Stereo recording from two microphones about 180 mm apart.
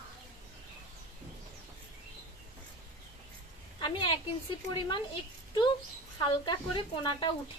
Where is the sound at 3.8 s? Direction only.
25° left (ahead or behind).